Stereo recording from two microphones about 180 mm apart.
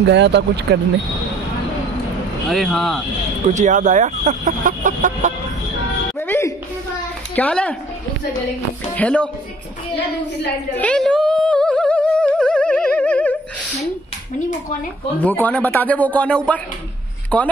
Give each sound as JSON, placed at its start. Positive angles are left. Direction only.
{"t": 0.0, "sound": "speech", "side_deg": -75}
{"t": 2.5, "sound": "speech", "side_deg": 0}
{"t": 3.4, "sound": "speech", "side_deg": -40}
{"t": 6.1, "sound": "a man's voice", "side_deg": 15}
{"t": 8.9, "sound": "a man's voice", "side_deg": 5}
{"t": 10.8, "sound": "music", "side_deg": 5}
{"t": 15.1, "sound": "a man's voice", "side_deg": 10}